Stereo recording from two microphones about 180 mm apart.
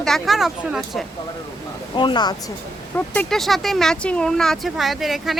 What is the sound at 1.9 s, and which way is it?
Speech, 25° left (ahead or behind).